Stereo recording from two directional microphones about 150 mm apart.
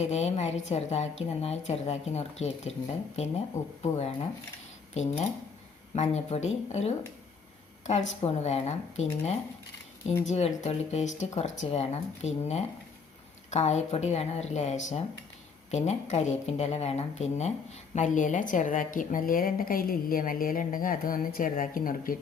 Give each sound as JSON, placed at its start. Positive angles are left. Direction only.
{"t": 0.0, "sound": "a woman's voice", "side_deg": 45}
{"t": 3.9, "sound": "a woman's voice", "side_deg": 45}
{"t": 5.9, "sound": "a woman's voice", "side_deg": 45}